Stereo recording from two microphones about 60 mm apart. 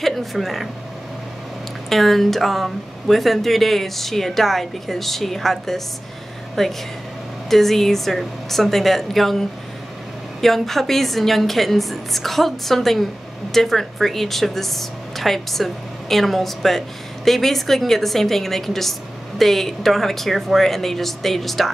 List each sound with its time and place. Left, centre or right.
0.0 s a woman's voice: centre
1.9 s a woman's voice: centre
10.4 s a woman's voice: centre